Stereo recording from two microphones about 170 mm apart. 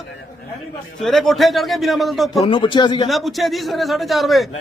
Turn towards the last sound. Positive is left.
turn(degrees=0)  # may be behind; listen again after turning